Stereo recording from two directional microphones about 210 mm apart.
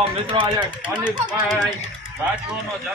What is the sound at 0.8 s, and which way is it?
Speech, 5° right (ahead or behind).